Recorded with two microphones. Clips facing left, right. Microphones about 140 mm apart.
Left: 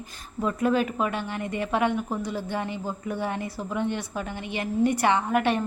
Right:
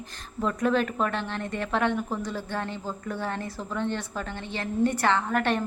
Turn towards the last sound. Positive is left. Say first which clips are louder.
# left 2 dB
turn(degrees=10)  # may be behind; listen again after turning